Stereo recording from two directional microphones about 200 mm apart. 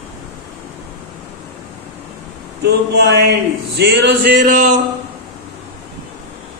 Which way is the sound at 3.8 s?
55° right (ahead or behind).